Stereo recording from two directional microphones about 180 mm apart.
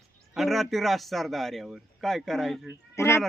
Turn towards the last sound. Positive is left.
turn(degrees=15)  # may be behind; listen again after turning